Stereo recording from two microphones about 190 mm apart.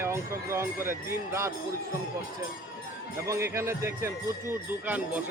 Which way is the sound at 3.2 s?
15° right (ahead or behind).